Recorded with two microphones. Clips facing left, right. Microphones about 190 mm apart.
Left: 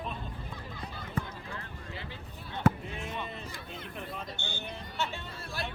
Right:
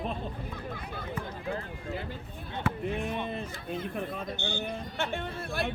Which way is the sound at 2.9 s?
55° right (ahead or behind).